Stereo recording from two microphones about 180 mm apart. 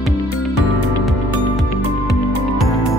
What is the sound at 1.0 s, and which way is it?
Music, centre (ahead or behind).